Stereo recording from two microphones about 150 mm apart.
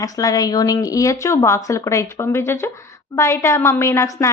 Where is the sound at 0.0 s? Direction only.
25° left (ahead or behind).